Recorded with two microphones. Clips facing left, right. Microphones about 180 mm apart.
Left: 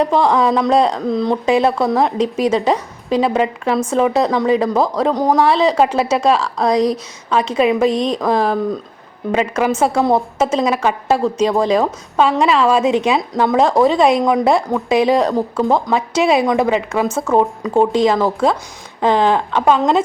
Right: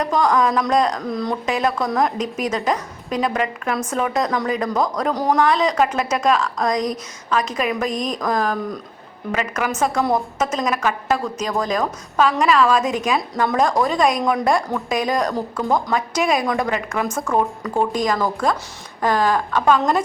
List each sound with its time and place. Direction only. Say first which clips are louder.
0.0 s a woman's voice: left 4 dB; 30° left (ahead or behind)